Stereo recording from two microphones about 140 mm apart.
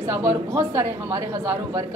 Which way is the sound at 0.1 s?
15° right (ahead or behind).